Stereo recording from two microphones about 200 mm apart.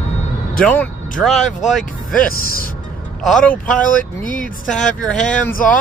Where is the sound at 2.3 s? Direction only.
45° left (ahead or behind).